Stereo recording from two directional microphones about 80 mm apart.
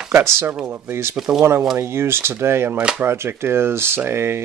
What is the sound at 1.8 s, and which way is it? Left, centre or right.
Speech, right.